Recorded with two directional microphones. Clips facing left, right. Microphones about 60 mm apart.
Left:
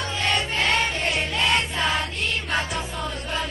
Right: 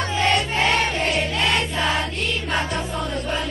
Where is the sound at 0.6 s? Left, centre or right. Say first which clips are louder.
Right 3 dB; right.